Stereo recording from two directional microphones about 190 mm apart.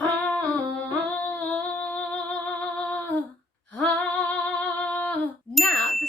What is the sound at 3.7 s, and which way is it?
Female singing, 10° left (ahead or behind).